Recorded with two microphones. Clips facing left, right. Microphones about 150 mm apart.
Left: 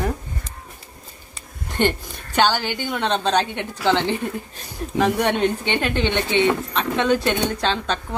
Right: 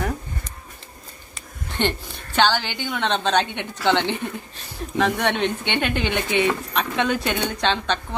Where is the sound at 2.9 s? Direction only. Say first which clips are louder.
Left 1 dB; 5° left (ahead or behind).